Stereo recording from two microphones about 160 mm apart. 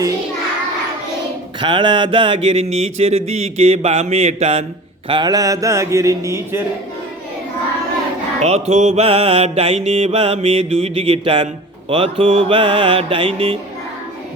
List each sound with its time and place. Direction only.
1.6 s a sound: 30° right (ahead or behind)
5.0 s a man's voice: 30° right (ahead or behind)
8.4 s mantra: 45° right (ahead or behind)